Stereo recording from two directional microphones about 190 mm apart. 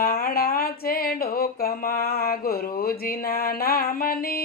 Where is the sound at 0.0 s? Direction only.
50° left (ahead or behind).